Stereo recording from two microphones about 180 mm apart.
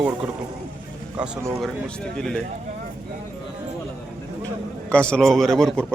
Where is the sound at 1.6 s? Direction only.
5° left (ahead or behind).